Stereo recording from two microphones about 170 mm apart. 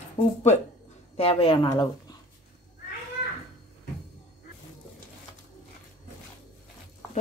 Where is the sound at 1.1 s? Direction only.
30° left (ahead or behind).